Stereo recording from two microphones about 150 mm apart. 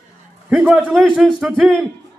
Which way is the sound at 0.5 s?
5° right (ahead or behind).